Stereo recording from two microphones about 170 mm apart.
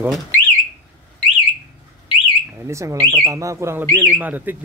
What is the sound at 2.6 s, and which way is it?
Speech, 15° right (ahead or behind).